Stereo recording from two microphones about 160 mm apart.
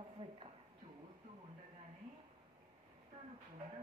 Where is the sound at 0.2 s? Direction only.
35° right (ahead or behind).